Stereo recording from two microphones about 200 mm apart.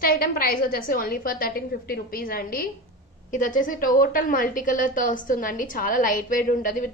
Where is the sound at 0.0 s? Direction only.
45° left (ahead or behind).